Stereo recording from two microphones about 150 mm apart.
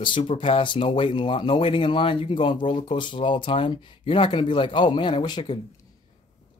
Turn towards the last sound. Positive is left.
turn(degrees=30)  # may be behind; listen again after turning